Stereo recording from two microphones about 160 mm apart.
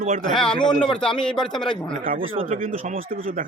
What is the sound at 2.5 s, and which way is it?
Speech, 60° right (ahead or behind).